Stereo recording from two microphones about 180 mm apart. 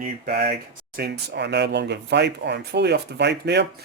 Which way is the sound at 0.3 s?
60° right (ahead or behind).